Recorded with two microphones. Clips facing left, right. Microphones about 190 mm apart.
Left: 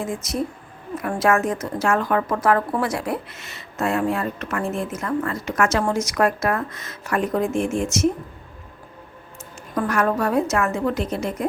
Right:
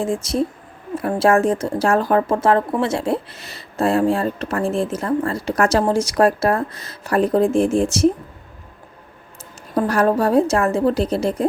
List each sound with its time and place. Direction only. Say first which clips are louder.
0.0 s speech: right 5 dB; 30° right (ahead or behind)
9.7 s speech: right 4 dB; 35° right (ahead or behind)